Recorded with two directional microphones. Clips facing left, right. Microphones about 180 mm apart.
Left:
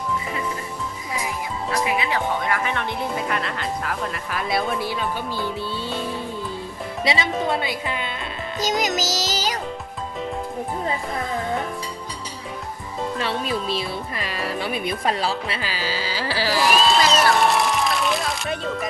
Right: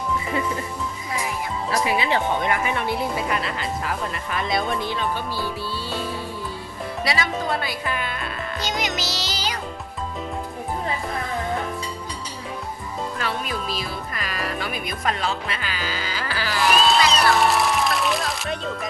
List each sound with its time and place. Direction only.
1.9 s speech: 30° right (ahead or behind)
2.7 s speech: 5° right (ahead or behind)
7.0 s speech: 25° left (ahead or behind)
8.6 s music: 40° left (ahead or behind)
13.1 s speech: 30° left (ahead or behind)
16.6 s music: centre (ahead or behind)